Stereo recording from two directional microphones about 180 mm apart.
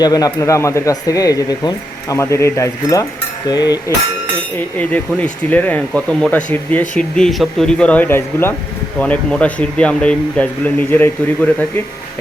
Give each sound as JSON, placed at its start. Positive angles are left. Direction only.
{"t": 0.0, "sound": "speech", "side_deg": 20}
{"t": 4.5, "sound": "speech", "side_deg": 10}